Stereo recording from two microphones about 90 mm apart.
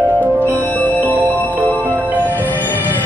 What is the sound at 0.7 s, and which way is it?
Music, 20° left (ahead or behind).